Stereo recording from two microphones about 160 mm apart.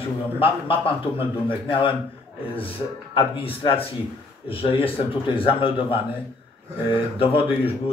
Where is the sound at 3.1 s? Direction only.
35° left (ahead or behind).